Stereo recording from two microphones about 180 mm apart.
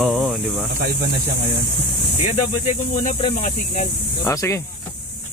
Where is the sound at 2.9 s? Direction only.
45° left (ahead or behind).